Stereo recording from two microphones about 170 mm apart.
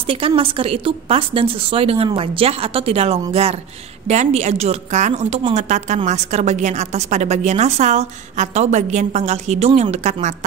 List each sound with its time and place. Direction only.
0.0 s a woman's voice: 35° right (ahead or behind)